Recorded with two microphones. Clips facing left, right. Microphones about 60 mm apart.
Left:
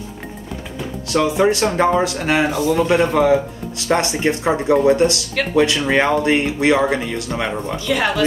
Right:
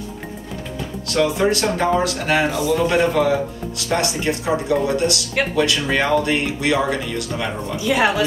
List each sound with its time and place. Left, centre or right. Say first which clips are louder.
1.1 s speech: left 2 dB; left
7.7 s speech: right 3 dB; centre